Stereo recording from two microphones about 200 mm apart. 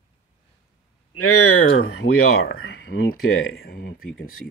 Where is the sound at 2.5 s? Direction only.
85° left.